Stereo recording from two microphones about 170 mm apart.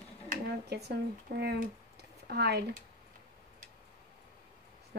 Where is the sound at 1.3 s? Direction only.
65° right (ahead or behind).